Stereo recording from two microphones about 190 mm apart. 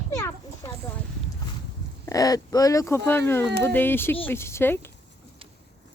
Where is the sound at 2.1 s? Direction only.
20° left (ahead or behind).